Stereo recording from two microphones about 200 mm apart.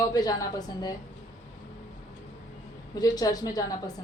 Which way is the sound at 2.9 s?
20° left (ahead or behind).